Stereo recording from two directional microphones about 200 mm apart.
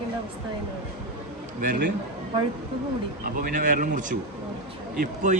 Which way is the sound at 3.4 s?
40° right (ahead or behind).